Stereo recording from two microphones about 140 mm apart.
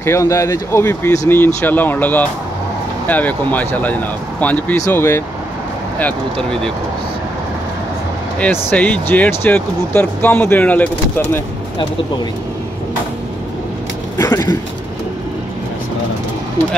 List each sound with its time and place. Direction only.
0.0 s speech: 20° left (ahead or behind)
5.9 s speech: 5° left (ahead or behind)
8.4 s speech: 15° left (ahead or behind)
14.1 s a sound: 25° left (ahead or behind)